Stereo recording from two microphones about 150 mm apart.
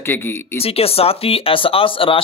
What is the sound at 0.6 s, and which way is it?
Speech, 40° left (ahead or behind).